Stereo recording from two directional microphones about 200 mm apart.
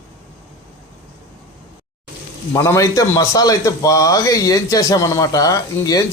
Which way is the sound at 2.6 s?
15° left (ahead or behind).